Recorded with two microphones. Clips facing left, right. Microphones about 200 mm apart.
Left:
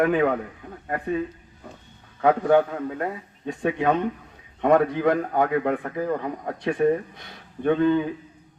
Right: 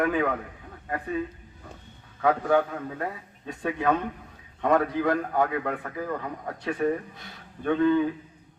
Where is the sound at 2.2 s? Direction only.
25° left (ahead or behind).